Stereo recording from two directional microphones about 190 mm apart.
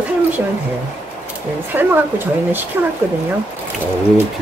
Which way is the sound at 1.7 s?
10° right (ahead or behind).